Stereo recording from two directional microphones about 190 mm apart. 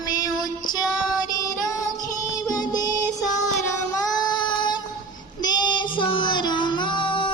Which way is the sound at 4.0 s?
20° left (ahead or behind).